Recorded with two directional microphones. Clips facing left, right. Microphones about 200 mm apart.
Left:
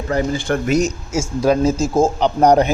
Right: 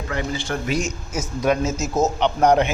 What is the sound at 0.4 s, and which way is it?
Speech, 55° left (ahead or behind).